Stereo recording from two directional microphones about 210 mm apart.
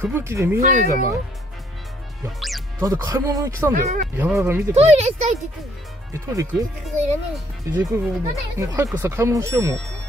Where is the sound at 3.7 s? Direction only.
40° right (ahead or behind).